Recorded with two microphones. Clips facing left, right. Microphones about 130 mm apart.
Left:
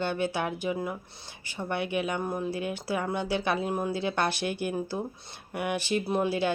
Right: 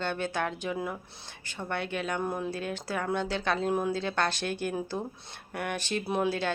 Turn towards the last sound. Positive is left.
turn(degrees=10)  # may be behind; listen again after turning